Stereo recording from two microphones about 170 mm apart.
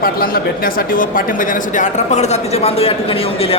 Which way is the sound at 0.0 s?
60° left (ahead or behind).